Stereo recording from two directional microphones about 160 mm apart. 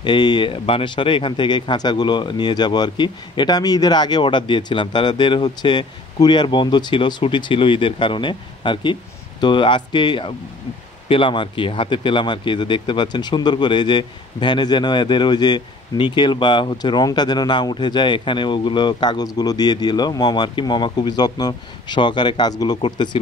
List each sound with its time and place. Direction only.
0.0 s speech: 30° left (ahead or behind)